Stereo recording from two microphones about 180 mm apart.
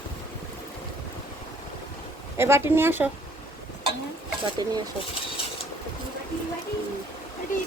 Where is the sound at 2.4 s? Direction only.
15° right (ahead or behind).